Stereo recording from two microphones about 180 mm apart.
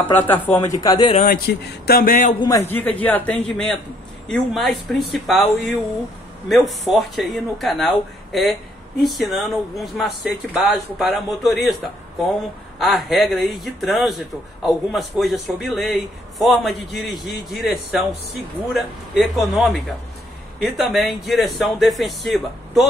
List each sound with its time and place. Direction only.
0.0 s speech: 10° left (ahead or behind)
1.1 s speech: 50° left (ahead or behind)
2.4 s a man's voice: 15° left (ahead or behind); by 11.7 s centre (ahead or behind)
12.7 s a man's voice: centre (ahead or behind)